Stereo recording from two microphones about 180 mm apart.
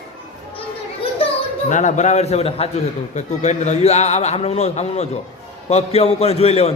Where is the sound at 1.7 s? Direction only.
45° left (ahead or behind).